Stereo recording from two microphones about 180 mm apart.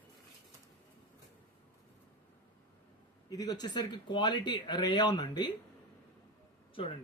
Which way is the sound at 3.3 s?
20° left (ahead or behind).